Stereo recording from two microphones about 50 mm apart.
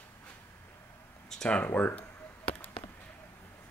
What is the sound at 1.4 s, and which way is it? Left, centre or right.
Speech, left.